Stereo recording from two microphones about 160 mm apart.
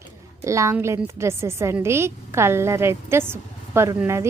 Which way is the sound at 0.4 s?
20° right (ahead or behind).